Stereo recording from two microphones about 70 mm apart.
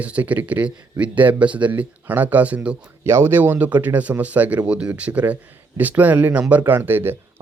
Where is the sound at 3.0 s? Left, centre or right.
Right.